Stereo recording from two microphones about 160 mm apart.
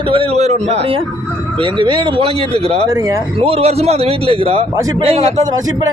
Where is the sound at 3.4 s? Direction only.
35° right (ahead or behind).